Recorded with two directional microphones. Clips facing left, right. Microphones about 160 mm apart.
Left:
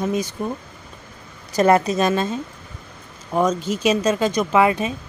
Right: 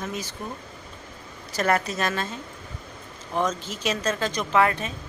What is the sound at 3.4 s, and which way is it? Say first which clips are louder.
Speech: left 7 dB; 15° left (ahead or behind).